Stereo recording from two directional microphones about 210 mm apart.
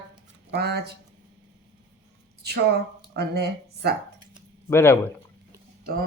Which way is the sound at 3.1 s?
50° right (ahead or behind).